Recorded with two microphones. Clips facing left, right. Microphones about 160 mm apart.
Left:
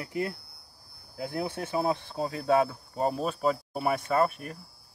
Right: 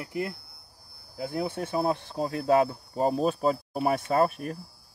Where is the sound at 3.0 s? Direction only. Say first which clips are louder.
Right 3 dB; 35° right (ahead or behind).